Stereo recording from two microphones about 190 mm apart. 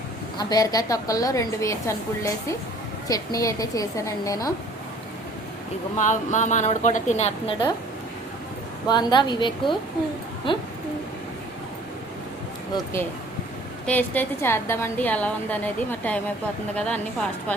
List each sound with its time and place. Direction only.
0.3 s a woman's voice: 20° left (ahead or behind)
6.0 s a woman's voice: 40° left (ahead or behind)
8.9 s a woman's voice: 20° left (ahead or behind)
13.8 s a woman's voice: 10° left (ahead or behind)